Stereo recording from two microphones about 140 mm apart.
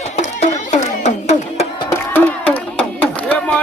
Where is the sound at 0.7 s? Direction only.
55° left (ahead or behind).